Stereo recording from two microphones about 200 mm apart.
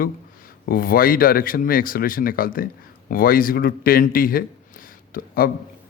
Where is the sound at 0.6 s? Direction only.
45° left (ahead or behind).